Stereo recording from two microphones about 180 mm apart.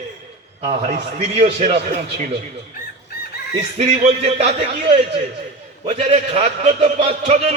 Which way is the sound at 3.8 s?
40° right (ahead or behind).